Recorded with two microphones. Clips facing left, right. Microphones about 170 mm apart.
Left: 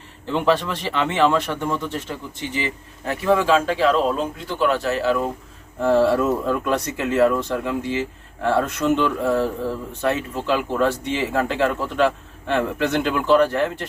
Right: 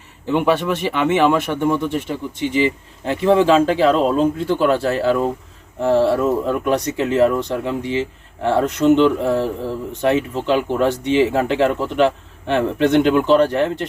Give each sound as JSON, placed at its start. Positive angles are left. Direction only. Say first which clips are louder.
{"t": 0.3, "sound": "speech", "louder": "right 3 dB", "side_deg": -15}
{"t": 6.4, "sound": "speech", "louder": "right 3 dB", "side_deg": -25}